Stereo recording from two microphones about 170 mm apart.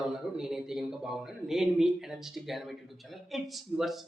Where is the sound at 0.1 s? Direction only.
5° right (ahead or behind).